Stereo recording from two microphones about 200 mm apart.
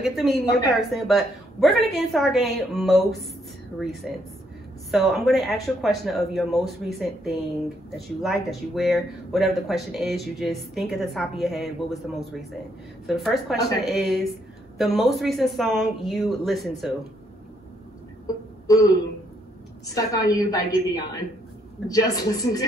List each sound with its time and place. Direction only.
0.0 s speech: centre (ahead or behind)
8.2 s speech: centre (ahead or behind)
18.2 s a sound: 15° left (ahead or behind)
19.9 s a woman's voice: 15° left (ahead or behind)